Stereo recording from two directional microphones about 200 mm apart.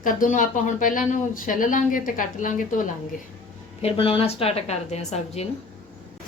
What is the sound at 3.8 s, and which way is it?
A woman's voice, 25° left (ahead or behind).